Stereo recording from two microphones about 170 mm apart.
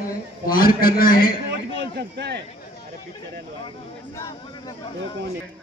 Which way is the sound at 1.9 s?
75° right (ahead or behind).